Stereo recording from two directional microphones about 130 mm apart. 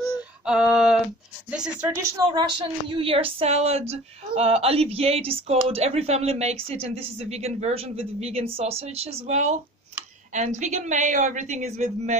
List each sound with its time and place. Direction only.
0.0 s female singing: 5° right (ahead or behind)
1.5 s speech: 10° right (ahead or behind)
2.3 s a man's voice: 40° right (ahead or behind); by 12.2 s 65° right (ahead or behind)